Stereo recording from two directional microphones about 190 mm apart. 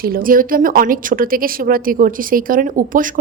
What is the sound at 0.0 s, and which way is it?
A woman's voice, 50° right (ahead or behind).